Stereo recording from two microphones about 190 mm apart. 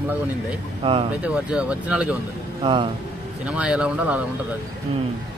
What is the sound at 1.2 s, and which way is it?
Speech, 5° right (ahead or behind).